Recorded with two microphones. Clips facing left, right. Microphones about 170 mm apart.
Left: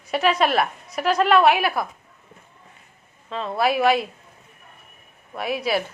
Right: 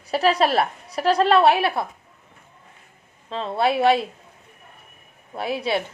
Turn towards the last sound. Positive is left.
turn(degrees=-25)  # may be behind; listen again after turning